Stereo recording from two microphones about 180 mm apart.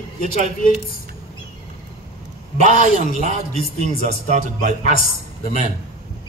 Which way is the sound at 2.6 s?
40° right (ahead or behind).